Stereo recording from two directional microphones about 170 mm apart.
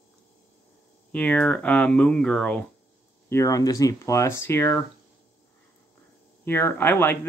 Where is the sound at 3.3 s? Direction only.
20° left (ahead or behind).